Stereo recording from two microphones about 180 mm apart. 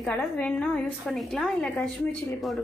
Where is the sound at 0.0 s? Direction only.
5° left (ahead or behind).